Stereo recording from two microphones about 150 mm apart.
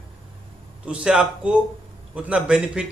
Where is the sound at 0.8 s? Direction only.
5° right (ahead or behind).